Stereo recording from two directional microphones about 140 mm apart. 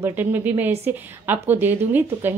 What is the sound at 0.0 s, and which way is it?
A woman's voice, 15° right (ahead or behind).